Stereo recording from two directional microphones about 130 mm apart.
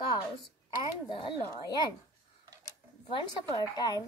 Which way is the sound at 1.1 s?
40° left (ahead or behind).